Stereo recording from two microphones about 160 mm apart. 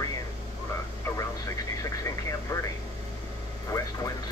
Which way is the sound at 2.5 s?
20° left (ahead or behind).